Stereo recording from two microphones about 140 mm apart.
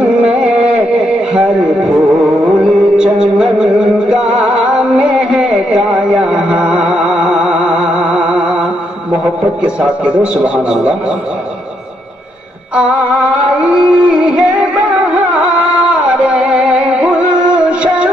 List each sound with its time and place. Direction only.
0.2 s a sound: 45° right (ahead or behind)
1.6 s music: 10° right (ahead or behind)
2.7 s music: centre (ahead or behind)
9.8 s a man's voice: 10° right (ahead or behind)
12.7 s music: 10° right (ahead or behind)